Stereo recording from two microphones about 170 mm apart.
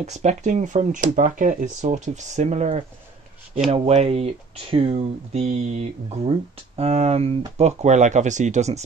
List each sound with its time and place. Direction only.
0.0 s speech: 45° right (ahead or behind)